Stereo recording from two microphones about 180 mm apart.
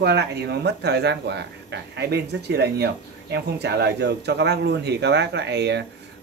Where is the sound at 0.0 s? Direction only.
70° right (ahead or behind).